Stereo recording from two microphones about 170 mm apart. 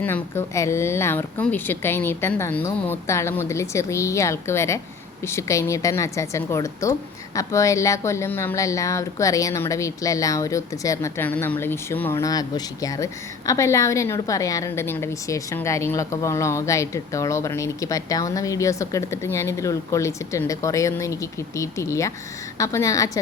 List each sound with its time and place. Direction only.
0.0 s a woman's voice: 15° left (ahead or behind)